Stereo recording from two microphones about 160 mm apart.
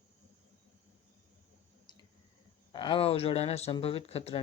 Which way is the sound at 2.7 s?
30° left (ahead or behind).